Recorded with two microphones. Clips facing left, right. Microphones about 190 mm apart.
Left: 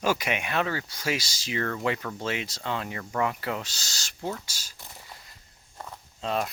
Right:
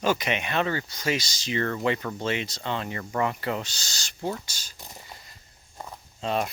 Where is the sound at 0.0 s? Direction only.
10° left (ahead or behind).